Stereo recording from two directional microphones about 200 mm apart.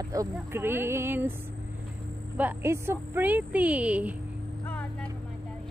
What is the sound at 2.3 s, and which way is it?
Speech, 10° right (ahead or behind).